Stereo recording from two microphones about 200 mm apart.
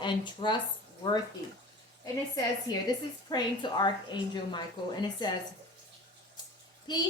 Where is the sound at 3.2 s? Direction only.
20° left (ahead or behind).